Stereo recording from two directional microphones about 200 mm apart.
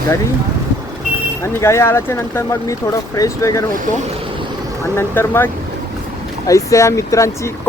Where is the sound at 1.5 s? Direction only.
15° left (ahead or behind).